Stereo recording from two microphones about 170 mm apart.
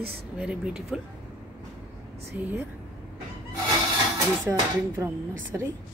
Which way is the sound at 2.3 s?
10° right (ahead or behind).